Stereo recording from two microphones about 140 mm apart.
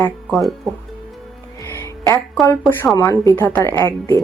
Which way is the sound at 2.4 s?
20° left (ahead or behind).